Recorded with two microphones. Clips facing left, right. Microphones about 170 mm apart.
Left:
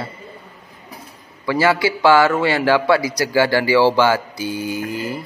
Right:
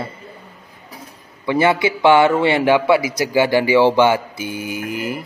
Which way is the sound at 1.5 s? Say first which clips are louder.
Right 1 dB; 25° right (ahead or behind).